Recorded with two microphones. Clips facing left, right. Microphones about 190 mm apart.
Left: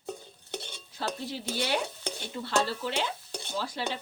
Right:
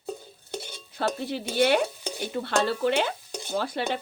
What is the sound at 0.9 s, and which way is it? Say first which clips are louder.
Speech: right 6 dB; 60° right (ahead or behind).